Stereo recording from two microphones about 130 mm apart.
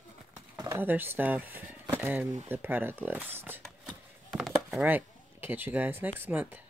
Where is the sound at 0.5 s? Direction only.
25° right (ahead or behind).